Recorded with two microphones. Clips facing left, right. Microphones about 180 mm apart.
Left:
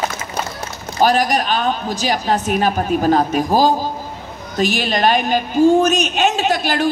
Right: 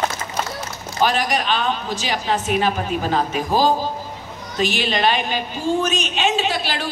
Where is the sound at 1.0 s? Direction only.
40° left (ahead or behind).